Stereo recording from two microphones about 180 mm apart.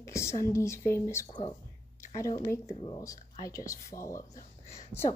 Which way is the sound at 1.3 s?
30° left (ahead or behind).